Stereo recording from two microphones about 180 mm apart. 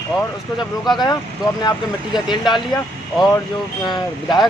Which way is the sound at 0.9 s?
25° left (ahead or behind).